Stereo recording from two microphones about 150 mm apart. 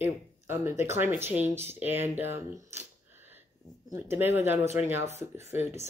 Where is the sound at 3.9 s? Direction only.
15° right (ahead or behind).